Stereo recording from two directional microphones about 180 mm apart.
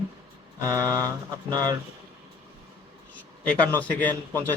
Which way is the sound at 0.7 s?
20° right (ahead or behind).